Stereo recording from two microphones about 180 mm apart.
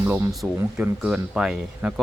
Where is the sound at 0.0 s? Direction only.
15° right (ahead or behind).